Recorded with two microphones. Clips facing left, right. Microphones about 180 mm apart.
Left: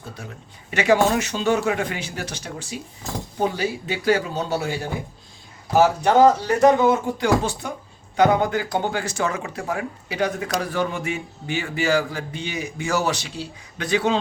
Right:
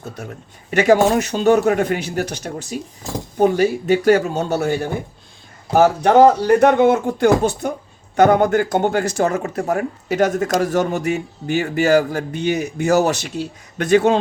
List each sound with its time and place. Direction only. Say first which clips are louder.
0.7 s speech: right 5 dB; 45° right (ahead or behind)